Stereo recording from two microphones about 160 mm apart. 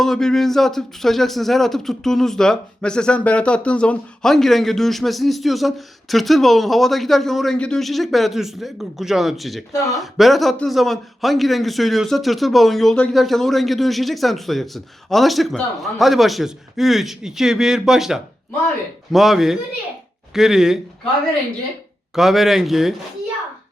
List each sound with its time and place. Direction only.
0.0 s speech: 5° left (ahead or behind)
9.7 s speech: 20° left (ahead or behind)
10.0 s speech: centre (ahead or behind)
22.1 s speech: centre (ahead or behind)